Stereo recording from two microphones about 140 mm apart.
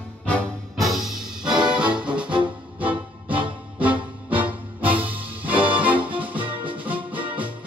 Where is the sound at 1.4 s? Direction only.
30° right (ahead or behind).